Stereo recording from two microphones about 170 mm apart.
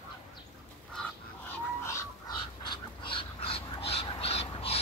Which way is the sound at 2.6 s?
30° left (ahead or behind).